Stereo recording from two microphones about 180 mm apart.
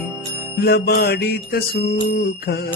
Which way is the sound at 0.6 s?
60° left (ahead or behind).